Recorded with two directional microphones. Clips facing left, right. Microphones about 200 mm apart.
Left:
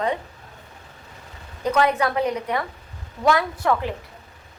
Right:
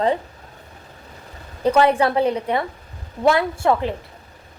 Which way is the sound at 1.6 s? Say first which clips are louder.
Right 4 dB; 30° right (ahead or behind).